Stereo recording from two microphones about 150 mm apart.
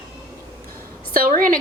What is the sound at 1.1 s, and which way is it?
Speech, 70° right (ahead or behind).